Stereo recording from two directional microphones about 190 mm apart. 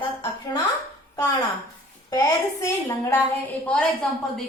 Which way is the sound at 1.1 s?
20° left (ahead or behind).